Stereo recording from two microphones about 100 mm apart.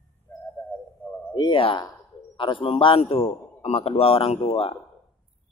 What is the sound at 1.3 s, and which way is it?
A man's voice, 55° left (ahead or behind).